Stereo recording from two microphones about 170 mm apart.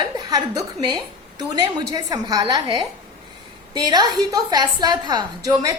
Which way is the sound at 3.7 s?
25° right (ahead or behind).